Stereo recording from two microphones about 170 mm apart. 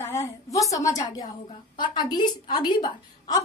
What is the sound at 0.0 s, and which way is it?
A woman's voice, 15° left (ahead or behind).